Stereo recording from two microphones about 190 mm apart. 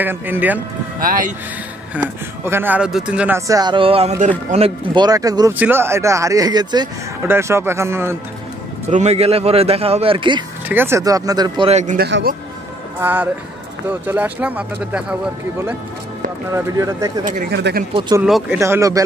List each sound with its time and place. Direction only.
0.0 s speech: 10° right (ahead or behind)
0.9 s speech: 45° right (ahead or behind)
2.0 s speech: 10° right (ahead or behind)
8.9 s a man's voice: 35° right (ahead or behind)
10.7 s speech: 10° right (ahead or behind)
11.7 s a man's voice: 40° right (ahead or behind)
12.0 s speech: 55° right (ahead or behind)
13.0 s speech: 10° right (ahead or behind)
16.5 s speech: 15° right (ahead or behind)
17.5 s speech: 60° right (ahead or behind)
17.9 s speech: 25° right (ahead or behind)
18.2 s speech: 5° right (ahead or behind)
18.6 s speech: 15° right (ahead or behind)